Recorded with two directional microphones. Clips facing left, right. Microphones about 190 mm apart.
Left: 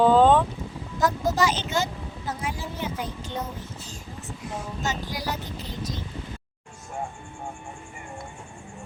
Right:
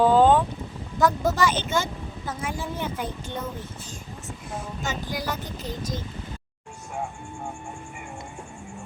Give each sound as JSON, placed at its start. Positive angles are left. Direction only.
{"t": 0.0, "sound": "boat", "side_deg": -5}
{"t": 0.9, "sound": "speech", "side_deg": -60}
{"t": 4.8, "sound": "speech", "side_deg": -50}